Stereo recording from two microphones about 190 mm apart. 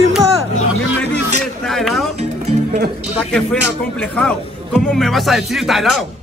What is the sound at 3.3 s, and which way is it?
A man's voice, 5° left (ahead or behind).